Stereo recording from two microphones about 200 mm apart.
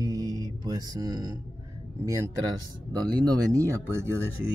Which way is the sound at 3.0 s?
20° right (ahead or behind).